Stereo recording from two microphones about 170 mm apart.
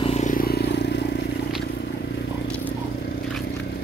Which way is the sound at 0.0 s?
40° left (ahead or behind).